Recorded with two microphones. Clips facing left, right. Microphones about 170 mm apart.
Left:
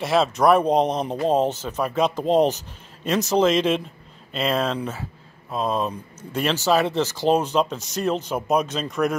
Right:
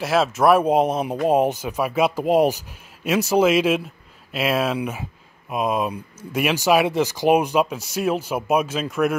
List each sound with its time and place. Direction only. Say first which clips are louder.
0.0 s speech: right 1 dB; 5° right (ahead or behind)